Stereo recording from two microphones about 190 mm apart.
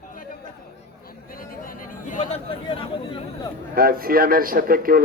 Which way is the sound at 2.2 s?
30° left (ahead or behind).